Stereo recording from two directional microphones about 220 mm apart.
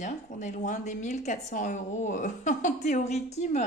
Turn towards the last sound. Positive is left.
turn(degrees=30)  # may be behind; listen again after turning